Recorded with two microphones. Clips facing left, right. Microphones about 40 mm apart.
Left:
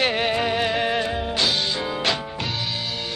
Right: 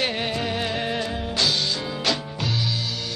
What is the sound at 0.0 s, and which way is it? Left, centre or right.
Music, left.